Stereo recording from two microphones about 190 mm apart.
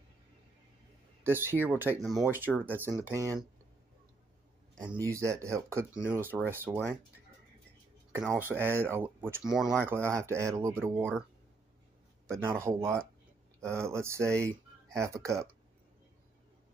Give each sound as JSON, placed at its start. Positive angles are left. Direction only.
{"t": 1.2, "sound": "speech", "side_deg": -10}
{"t": 5.0, "sound": "speech", "side_deg": -15}
{"t": 8.1, "sound": "speech", "side_deg": -10}
{"t": 9.8, "sound": "speech", "side_deg": -15}
{"t": 12.3, "sound": "speech", "side_deg": -15}